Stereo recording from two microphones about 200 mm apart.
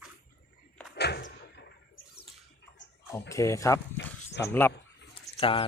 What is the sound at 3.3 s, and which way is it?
Speech, 15° left (ahead or behind).